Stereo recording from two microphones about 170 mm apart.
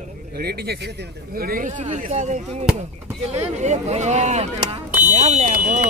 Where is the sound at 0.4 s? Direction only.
65° right (ahead or behind).